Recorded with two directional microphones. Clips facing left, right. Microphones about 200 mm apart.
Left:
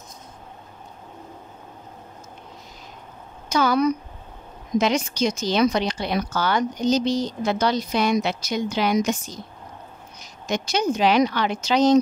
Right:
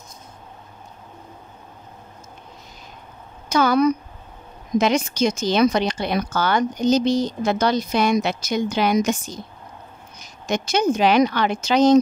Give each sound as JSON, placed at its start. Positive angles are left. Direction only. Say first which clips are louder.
{"t": 3.4, "sound": "speech", "louder": "right 3 dB", "side_deg": -55}